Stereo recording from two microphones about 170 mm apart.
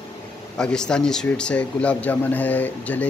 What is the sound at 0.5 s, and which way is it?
Speech, 5° left (ahead or behind).